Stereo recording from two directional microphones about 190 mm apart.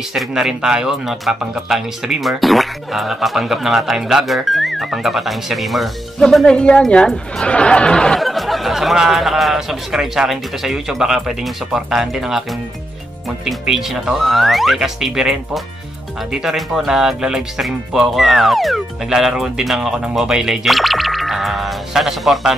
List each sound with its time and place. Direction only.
0.1 s speech: 5° right (ahead or behind)
13.5 s speech: centre (ahead or behind)